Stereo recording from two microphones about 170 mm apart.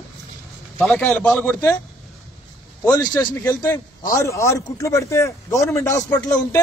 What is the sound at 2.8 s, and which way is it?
A man's voice, 15° left (ahead or behind).